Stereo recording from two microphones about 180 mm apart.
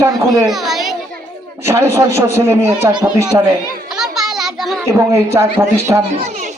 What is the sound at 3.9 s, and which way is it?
Children playing, centre (ahead or behind).